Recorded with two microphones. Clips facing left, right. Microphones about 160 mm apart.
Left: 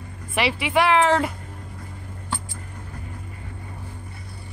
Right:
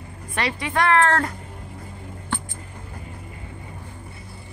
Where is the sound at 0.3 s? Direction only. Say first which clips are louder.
Left 3 dB; 5° left (ahead or behind).